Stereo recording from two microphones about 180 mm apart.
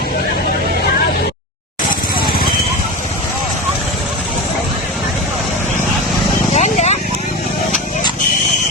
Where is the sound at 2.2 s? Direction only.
55° left (ahead or behind).